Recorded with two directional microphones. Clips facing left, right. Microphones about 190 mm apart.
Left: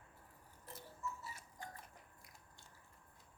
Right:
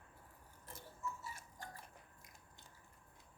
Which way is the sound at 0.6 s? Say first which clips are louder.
Even; 45° right (ahead or behind).